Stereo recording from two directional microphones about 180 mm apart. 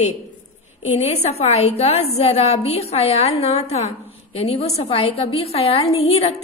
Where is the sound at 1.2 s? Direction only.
35° left (ahead or behind).